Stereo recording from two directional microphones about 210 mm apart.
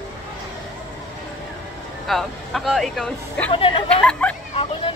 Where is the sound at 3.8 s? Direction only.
5° left (ahead or behind).